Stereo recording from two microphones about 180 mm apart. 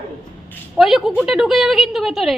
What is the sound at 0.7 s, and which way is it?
A woman's voice, centre (ahead or behind).